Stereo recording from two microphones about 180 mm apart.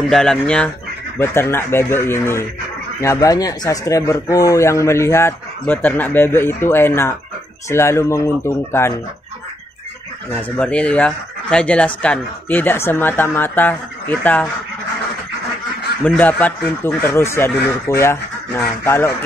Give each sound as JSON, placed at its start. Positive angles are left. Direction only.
{"t": 0.1, "sound": "speech", "side_deg": 5}
{"t": 10.6, "sound": "speech", "side_deg": 5}
{"t": 16.0, "sound": "speech", "side_deg": 10}